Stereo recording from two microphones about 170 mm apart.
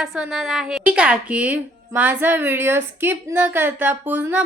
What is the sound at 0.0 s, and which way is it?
A woman's voice, centre (ahead or behind).